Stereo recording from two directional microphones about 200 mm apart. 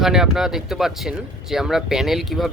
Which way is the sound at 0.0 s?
Centre (ahead or behind).